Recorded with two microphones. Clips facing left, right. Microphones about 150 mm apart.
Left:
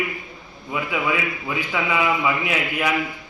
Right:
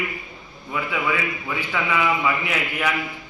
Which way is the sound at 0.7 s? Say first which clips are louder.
Left 1 dB; 15° left (ahead or behind).